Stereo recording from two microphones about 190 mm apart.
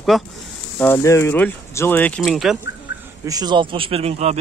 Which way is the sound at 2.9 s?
70° left (ahead or behind).